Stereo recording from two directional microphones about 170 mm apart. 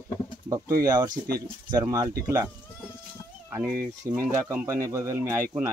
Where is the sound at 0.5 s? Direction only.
20° right (ahead or behind).